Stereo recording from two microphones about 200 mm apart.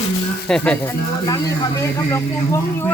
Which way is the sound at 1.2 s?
15° left (ahead or behind).